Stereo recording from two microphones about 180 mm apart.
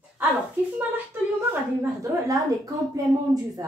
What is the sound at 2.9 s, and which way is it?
Speech, 20° right (ahead or behind).